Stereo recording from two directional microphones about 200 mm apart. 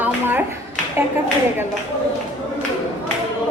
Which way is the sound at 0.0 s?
10° right (ahead or behind).